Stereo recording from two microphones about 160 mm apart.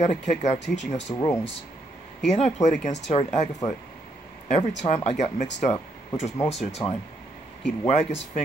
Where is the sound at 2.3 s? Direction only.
45° left (ahead or behind).